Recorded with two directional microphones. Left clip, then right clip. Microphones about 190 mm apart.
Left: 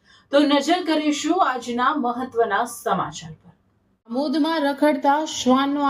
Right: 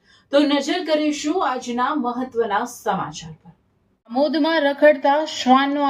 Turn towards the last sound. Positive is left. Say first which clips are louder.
# right 3 dB
turn(degrees=35)  # may be behind; listen again after turning